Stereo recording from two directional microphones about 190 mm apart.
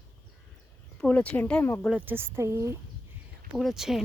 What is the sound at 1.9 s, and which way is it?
Speech, 10° right (ahead or behind).